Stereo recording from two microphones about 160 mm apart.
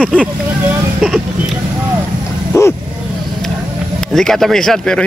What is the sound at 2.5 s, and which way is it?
Speech, 20° left (ahead or behind).